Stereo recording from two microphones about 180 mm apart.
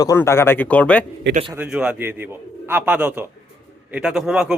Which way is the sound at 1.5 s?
10° right (ahead or behind).